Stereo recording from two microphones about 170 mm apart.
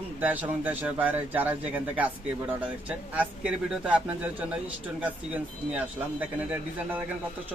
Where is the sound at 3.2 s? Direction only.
5° right (ahead or behind).